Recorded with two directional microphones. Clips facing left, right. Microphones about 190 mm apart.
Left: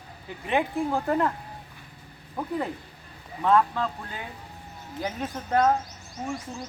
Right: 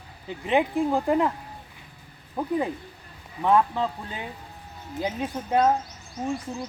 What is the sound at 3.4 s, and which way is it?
Speech, 15° right (ahead or behind).